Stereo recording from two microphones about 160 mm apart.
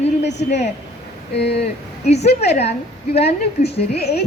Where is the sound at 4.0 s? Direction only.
85° left.